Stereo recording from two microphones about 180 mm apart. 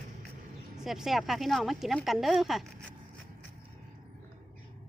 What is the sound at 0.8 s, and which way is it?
Speech, centre (ahead or behind).